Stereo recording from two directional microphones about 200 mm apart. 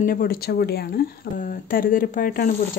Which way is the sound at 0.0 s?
45° left (ahead or behind).